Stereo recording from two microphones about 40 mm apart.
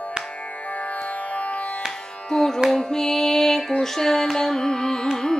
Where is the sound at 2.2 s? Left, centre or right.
Centre.